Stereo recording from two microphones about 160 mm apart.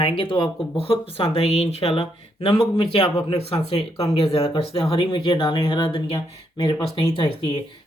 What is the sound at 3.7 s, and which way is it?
Speech, 40° left (ahead or behind).